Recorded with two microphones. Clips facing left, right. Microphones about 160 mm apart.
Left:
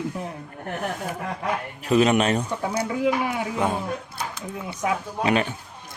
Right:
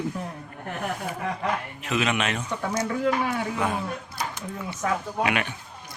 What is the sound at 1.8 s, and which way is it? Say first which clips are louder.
Speech: left 7 dB; 35° left (ahead or behind).